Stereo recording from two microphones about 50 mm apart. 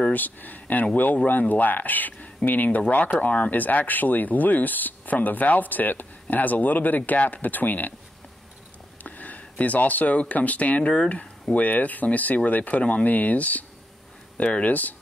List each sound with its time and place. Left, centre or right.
0.1 s speech: left
9.0 s speech: left